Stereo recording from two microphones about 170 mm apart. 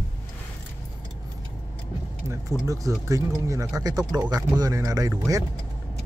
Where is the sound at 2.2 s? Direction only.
20° right (ahead or behind).